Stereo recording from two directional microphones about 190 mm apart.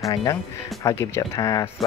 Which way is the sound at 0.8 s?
15° left (ahead or behind).